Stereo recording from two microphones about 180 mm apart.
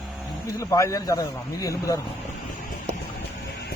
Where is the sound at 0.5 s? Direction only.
15° left (ahead or behind).